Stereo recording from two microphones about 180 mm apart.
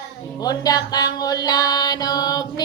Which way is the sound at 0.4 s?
20° left (ahead or behind).